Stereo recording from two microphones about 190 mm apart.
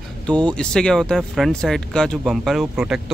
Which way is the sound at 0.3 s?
5° left (ahead or behind).